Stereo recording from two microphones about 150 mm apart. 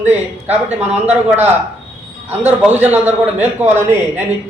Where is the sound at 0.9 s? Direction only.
10° right (ahead or behind).